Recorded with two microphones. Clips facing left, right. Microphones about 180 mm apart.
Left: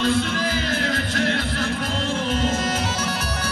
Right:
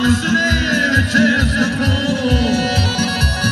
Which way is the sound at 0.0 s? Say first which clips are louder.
Right 6 dB; 45° right (ahead or behind).